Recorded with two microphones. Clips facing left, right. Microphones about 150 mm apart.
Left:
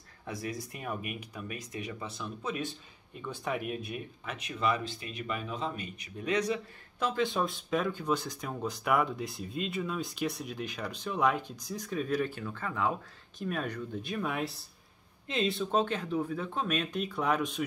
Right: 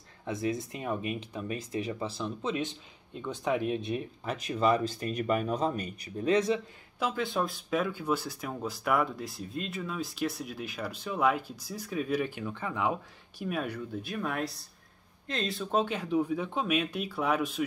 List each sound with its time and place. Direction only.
0.3 s speech: 25° right (ahead or behind)
7.3 s speech: centre (ahead or behind)